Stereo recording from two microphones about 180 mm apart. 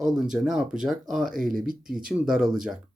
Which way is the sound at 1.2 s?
50° right (ahead or behind).